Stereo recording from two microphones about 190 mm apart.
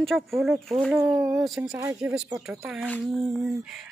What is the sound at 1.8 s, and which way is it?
Speech, 15° right (ahead or behind).